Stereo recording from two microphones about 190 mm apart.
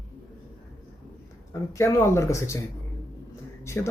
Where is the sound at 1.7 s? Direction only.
15° left (ahead or behind).